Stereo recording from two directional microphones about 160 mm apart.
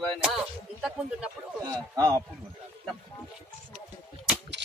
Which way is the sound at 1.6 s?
25° right (ahead or behind).